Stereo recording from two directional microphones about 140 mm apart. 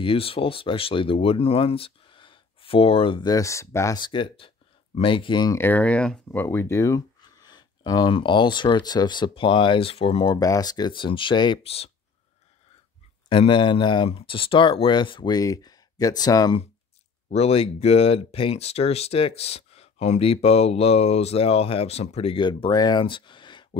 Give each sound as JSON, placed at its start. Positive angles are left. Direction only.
{"t": 0.0, "sound": "speech", "side_deg": 40}
{"t": 4.0, "sound": "speech", "side_deg": 35}
{"t": 5.6, "sound": "speech", "side_deg": 10}
{"t": 10.3, "sound": "speech", "side_deg": 25}
{"t": 13.3, "sound": "speech", "side_deg": 40}
{"t": 17.3, "sound": "speech", "side_deg": 45}